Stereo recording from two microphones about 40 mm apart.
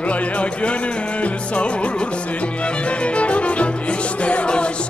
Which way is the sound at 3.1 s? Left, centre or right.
Left.